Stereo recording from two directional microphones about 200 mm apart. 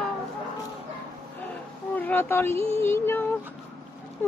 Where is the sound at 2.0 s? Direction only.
10° left (ahead or behind).